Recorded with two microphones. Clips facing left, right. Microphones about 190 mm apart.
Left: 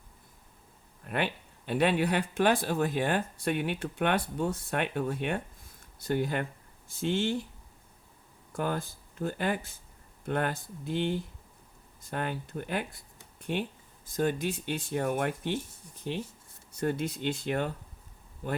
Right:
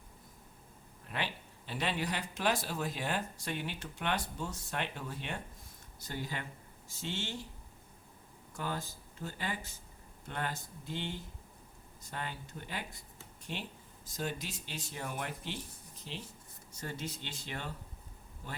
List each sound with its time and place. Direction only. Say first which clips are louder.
1.0 s speech: left 8 dB; 60° left (ahead or behind)
8.5 s speech: left 7 dB; 55° left (ahead or behind)